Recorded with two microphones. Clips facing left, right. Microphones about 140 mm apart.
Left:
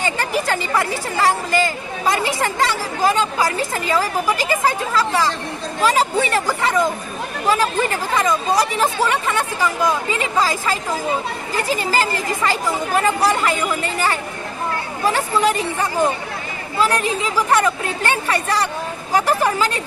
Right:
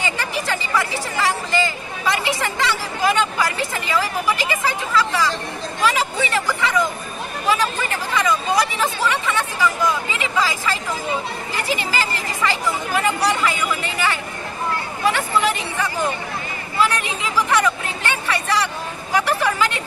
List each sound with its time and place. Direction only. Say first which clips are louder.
0.0 s speech: left 4 dB; 45° left (ahead or behind)